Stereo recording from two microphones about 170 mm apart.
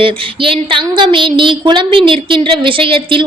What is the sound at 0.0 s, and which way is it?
Speech, 30° right (ahead or behind).